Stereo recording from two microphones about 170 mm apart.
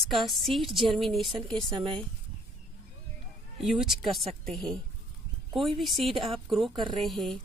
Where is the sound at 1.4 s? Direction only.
30° right (ahead or behind).